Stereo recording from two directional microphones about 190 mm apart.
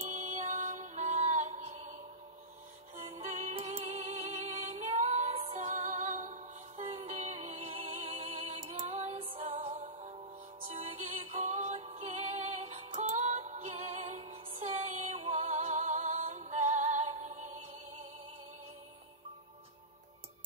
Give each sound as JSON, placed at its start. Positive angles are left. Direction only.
{"t": 0.1, "sound": "music", "side_deg": -40}
{"t": 3.0, "sound": "music", "side_deg": -35}